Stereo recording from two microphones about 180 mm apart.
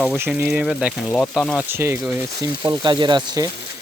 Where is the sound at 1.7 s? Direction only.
15° right (ahead or behind).